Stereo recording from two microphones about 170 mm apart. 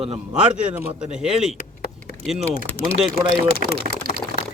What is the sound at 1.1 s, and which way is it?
Speech, 5° right (ahead or behind).